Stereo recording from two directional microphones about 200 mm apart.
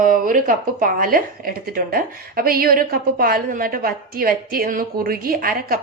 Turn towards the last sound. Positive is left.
turn(degrees=-45)  # may be behind; listen again after turning